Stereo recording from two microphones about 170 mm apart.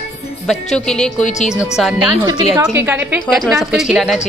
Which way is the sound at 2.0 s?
25° right (ahead or behind).